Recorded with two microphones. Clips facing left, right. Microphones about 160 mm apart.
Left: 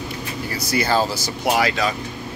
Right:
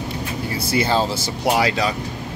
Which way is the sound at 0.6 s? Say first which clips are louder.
Even; 25° right (ahead or behind).